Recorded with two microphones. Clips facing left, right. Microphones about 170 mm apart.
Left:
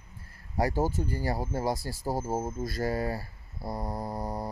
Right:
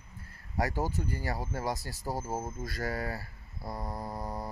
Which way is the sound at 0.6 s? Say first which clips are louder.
Left 4 dB; 30° left (ahead or behind).